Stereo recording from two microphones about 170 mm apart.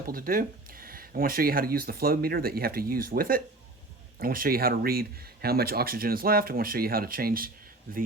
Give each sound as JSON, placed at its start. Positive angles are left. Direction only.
{"t": 0.1, "sound": "speech", "side_deg": -55}